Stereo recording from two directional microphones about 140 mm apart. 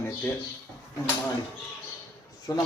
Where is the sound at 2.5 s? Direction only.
30° left (ahead or behind).